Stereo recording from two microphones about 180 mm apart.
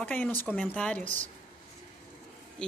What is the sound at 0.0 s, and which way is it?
Speech, 5° left (ahead or behind).